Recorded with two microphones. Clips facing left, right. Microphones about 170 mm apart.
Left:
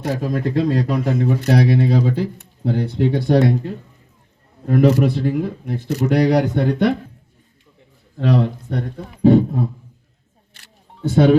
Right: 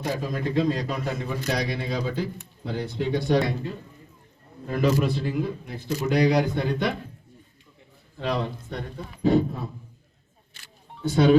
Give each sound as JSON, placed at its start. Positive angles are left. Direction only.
{"t": 0.0, "sound": "speech", "side_deg": 65}
{"t": 8.3, "sound": "speech", "side_deg": 60}
{"t": 11.1, "sound": "speech", "side_deg": 55}